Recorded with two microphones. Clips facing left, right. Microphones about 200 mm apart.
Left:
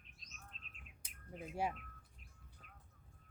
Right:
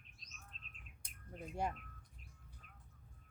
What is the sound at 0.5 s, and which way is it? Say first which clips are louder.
Bird: even; 40° right (ahead or behind).